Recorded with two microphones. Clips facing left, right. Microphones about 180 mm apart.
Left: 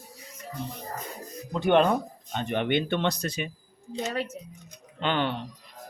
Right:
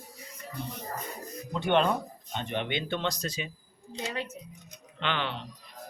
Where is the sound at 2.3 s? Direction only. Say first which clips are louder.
Left 6 dB; 50° left (ahead or behind).